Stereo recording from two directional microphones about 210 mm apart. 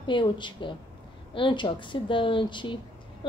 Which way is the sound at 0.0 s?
25° left (ahead or behind).